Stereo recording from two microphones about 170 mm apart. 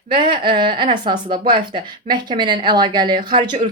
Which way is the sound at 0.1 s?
30° right (ahead or behind).